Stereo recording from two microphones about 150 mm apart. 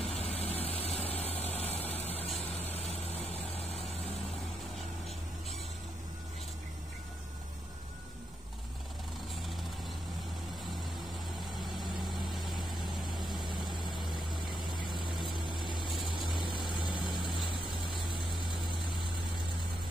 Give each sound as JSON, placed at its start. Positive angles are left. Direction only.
{"t": 0.0, "sound": "vehicle", "side_deg": 45}
{"t": 12.0, "sound": "vehicle", "side_deg": 0}
{"t": 14.5, "sound": "vehicle", "side_deg": 30}
{"t": 16.5, "sound": "vehicle", "side_deg": 30}